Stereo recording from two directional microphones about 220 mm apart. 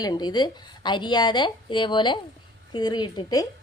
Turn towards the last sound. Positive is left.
turn(degrees=20)  # may be behind; listen again after turning